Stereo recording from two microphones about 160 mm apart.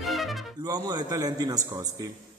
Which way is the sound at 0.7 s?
25° right (ahead or behind).